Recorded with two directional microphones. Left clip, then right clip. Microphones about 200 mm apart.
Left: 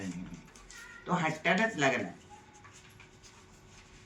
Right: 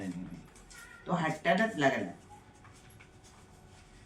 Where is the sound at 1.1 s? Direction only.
5° right (ahead or behind).